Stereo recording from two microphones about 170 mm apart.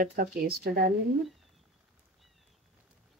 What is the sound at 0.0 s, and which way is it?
Speech, 55° right (ahead or behind).